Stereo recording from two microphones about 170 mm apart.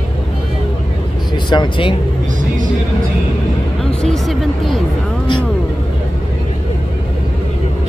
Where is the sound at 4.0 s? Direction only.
Centre (ahead or behind).